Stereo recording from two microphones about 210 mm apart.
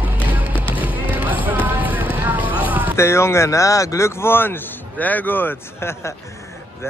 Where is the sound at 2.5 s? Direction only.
10° right (ahead or behind).